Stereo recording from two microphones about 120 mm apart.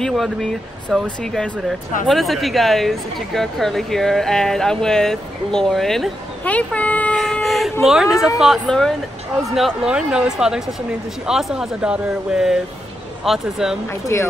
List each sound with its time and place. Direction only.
0.0 s speech: centre (ahead or behind)
7.4 s a sound: centre (ahead or behind)
7.8 s speech: 5° right (ahead or behind)
14.1 s speech: 20° left (ahead or behind)